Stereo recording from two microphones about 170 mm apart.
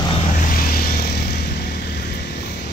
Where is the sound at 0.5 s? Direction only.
60° left (ahead or behind).